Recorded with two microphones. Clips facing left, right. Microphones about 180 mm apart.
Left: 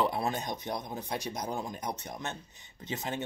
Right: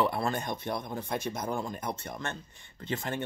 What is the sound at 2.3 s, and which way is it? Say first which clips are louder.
Speech: right 2 dB; 55° right (ahead or behind).